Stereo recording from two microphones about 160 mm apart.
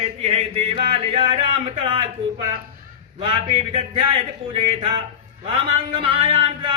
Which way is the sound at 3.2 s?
35° right (ahead or behind).